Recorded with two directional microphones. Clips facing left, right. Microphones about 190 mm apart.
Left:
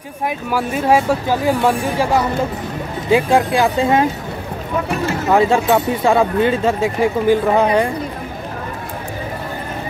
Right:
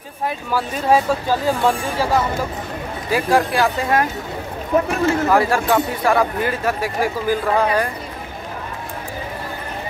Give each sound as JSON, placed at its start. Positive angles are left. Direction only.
{"t": 0.5, "sound": "speech", "side_deg": 10}
{"t": 3.1, "sound": "speech", "side_deg": 20}
{"t": 5.3, "sound": "speech", "side_deg": 20}